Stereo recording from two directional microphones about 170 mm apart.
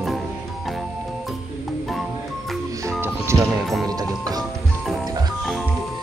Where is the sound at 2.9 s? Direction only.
15° right (ahead or behind).